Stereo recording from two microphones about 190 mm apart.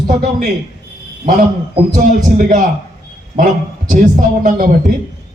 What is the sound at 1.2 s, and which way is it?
A man's voice, 45° right (ahead or behind).